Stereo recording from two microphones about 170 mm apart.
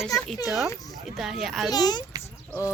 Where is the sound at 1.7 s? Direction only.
25° left (ahead or behind).